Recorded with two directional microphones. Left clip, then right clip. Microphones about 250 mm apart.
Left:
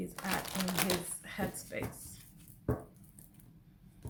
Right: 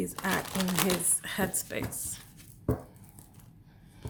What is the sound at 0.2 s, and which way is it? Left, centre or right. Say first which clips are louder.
Speech: right 5 dB; centre.